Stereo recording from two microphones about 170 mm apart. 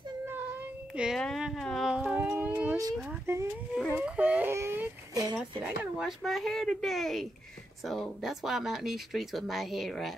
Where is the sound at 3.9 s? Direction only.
10° right (ahead or behind).